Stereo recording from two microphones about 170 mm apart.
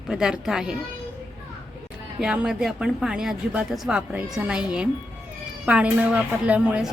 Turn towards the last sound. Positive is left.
turn(degrees=-5)  # may be behind; listen again after turning